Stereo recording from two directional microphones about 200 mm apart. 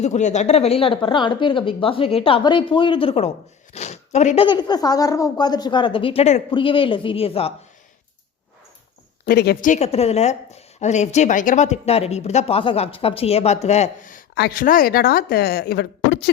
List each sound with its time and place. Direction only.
0.0 s a woman's voice: 35° left (ahead or behind)
4.4 s a woman's voice: 20° left (ahead or behind)
9.2 s speech: 55° left (ahead or behind)